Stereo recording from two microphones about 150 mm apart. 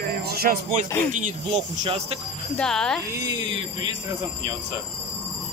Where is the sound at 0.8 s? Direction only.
15° left (ahead or behind).